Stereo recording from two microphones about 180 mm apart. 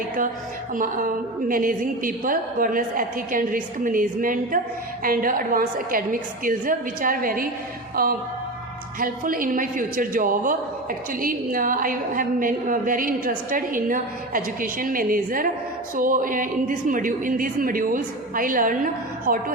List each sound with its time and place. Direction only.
0.7 s a man's voice: 50° right (ahead or behind)